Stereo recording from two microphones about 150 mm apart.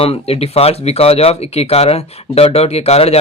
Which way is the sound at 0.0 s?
40° left (ahead or behind).